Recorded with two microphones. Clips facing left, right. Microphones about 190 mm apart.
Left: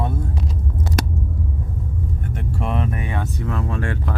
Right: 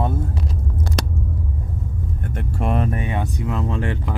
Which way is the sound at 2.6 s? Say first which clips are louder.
Right 3 dB; 45° right (ahead or behind).